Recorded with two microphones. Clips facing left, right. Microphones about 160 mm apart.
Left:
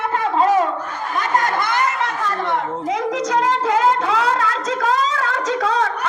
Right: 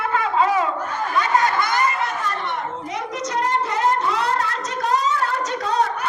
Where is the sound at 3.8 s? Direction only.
90° left.